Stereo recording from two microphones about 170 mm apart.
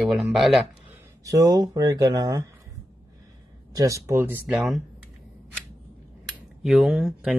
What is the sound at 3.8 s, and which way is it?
Speech, 20° right (ahead or behind).